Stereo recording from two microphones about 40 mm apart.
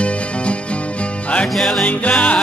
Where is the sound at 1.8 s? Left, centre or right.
Left.